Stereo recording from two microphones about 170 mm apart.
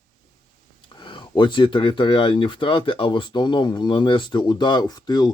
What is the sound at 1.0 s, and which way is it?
Speech, 25° left (ahead or behind).